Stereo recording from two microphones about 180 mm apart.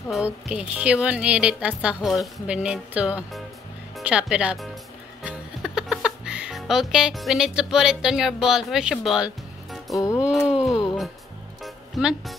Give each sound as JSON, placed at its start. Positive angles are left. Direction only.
{"t": 0.1, "sound": "a woman's voice", "side_deg": -5}
{"t": 5.2, "sound": "music", "side_deg": -5}
{"t": 9.9, "sound": "music", "side_deg": 20}
{"t": 10.2, "sound": "wail", "side_deg": -5}
{"t": 11.6, "sound": "music", "side_deg": 0}